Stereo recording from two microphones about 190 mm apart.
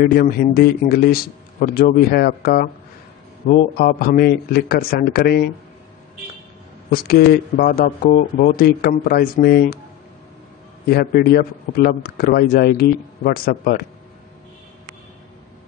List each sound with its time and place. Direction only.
0.0 s a man's voice: 50° left (ahead or behind)
6.9 s a man's voice: 50° left (ahead or behind)
10.9 s a man's voice: 55° left (ahead or behind)